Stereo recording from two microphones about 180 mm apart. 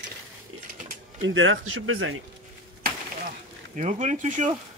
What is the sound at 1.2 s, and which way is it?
Speech, 90° right.